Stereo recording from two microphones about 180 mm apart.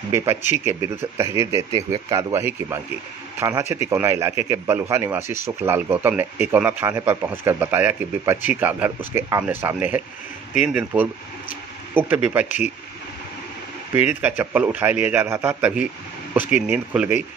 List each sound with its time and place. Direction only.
0.1 s a man's voice: 15° right (ahead or behind)
13.9 s a man's voice: 10° right (ahead or behind)